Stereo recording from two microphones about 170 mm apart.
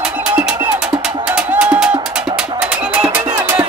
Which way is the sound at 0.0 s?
5° right (ahead or behind).